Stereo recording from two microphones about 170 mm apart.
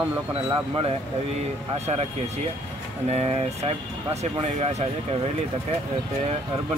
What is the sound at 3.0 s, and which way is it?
Speech, 40° right (ahead or behind).